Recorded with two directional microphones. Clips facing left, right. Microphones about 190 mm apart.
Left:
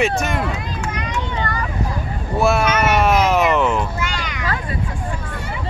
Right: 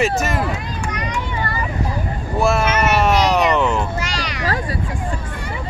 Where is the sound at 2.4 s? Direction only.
Centre (ahead or behind).